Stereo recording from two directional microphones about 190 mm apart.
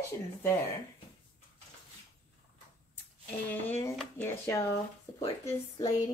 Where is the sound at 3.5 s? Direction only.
10° left (ahead or behind).